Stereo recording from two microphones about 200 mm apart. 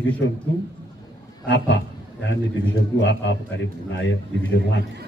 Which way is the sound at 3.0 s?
60° left (ahead or behind).